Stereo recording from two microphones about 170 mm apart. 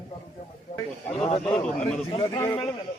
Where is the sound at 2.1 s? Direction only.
20° left (ahead or behind).